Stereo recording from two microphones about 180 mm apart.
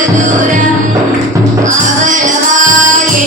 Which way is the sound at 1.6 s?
45° right (ahead or behind).